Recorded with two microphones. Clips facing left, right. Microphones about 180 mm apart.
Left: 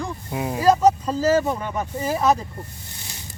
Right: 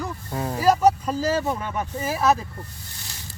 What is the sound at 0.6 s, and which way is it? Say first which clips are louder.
Speech: left 2 dB; 10° right (ahead or behind).